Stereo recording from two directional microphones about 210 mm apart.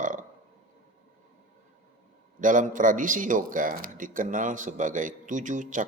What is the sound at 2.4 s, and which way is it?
Speech, 40° right (ahead or behind).